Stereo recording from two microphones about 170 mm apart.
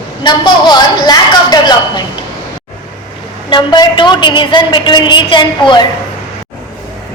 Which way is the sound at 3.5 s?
25° left (ahead or behind).